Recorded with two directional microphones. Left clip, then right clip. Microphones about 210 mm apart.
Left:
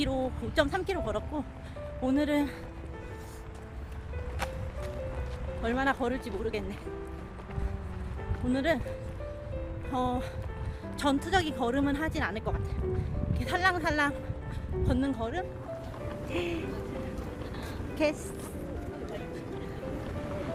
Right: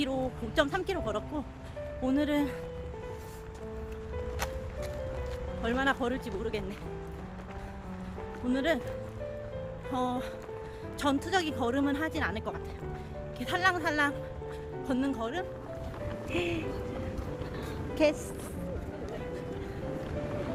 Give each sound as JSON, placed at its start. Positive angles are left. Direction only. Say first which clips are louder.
{"t": 0.0, "sound": "a woman's voice", "louder": "left 1 dB", "side_deg": 0}
{"t": 5.6, "sound": "a woman's voice", "louder": "even", "side_deg": -5}
{"t": 8.5, "sound": "a woman's voice", "louder": "left 1 dB", "side_deg": -5}
{"t": 9.9, "sound": "a woman's voice", "louder": "left 1 dB", "side_deg": -5}
{"t": 16.3, "sound": "music", "louder": "right 1 dB", "side_deg": -15}
{"t": 17.9, "sound": "speech", "louder": "right 2 dB", "side_deg": -20}